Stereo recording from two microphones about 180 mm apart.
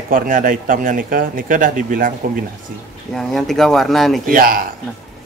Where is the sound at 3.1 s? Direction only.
Centre (ahead or behind).